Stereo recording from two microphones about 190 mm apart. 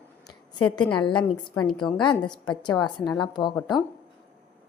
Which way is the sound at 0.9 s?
25° left (ahead or behind).